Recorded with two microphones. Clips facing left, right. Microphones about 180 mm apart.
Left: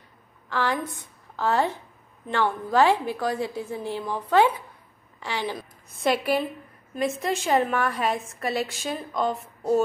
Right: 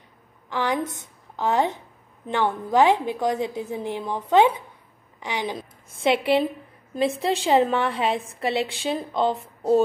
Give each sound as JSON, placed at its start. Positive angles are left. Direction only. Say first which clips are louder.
{"t": 0.5, "sound": "a woman's voice", "louder": "right 2 dB", "side_deg": -15}
{"t": 7.4, "sound": "a woman's voice", "louder": "right 4 dB", "side_deg": -20}
{"t": 7.7, "sound": "a woman's voice", "louder": "right 2 dB", "side_deg": -30}